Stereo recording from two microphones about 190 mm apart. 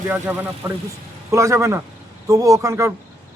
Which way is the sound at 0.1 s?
10° right (ahead or behind).